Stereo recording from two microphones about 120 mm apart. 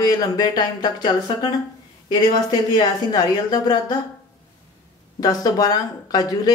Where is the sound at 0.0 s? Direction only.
30° left (ahead or behind).